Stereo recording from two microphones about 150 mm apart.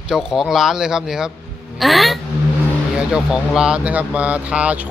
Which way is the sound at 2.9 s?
5° right (ahead or behind).